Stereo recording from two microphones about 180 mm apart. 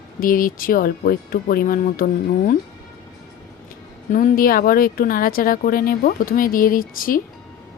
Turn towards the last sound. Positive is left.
turn(degrees=50)  # may be behind; listen again after turning